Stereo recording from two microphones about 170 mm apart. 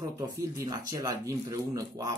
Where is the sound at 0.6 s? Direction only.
20° right (ahead or behind).